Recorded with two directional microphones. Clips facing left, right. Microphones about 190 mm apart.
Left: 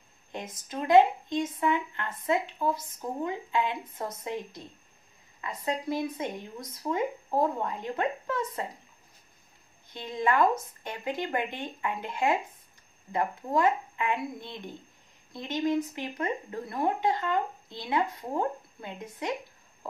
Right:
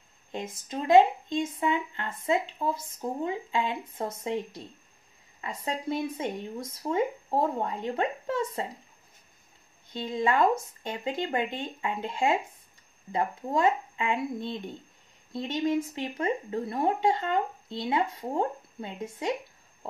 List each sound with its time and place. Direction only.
0.3 s speech: 25° right (ahead or behind)
5.4 s speech: 25° right (ahead or behind)
9.9 s speech: 25° right (ahead or behind)